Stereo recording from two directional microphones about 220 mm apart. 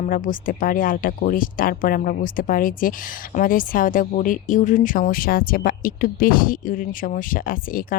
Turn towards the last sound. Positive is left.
turn(degrees=40)  # may be behind; listen again after turning